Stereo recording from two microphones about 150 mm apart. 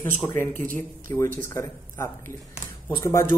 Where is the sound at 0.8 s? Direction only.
20° left (ahead or behind).